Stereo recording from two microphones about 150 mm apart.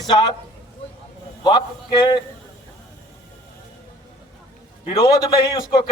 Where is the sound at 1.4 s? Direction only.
30° left (ahead or behind).